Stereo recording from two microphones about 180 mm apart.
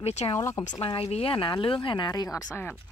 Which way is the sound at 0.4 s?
15° left (ahead or behind).